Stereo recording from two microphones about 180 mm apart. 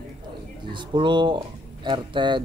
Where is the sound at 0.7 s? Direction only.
25° right (ahead or behind).